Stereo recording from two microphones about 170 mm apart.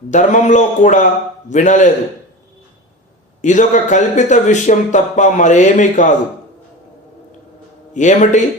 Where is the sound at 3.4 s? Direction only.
45° left (ahead or behind).